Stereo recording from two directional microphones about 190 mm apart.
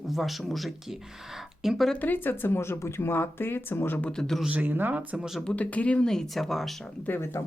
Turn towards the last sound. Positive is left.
turn(degrees=10)  # may be behind; listen again after turning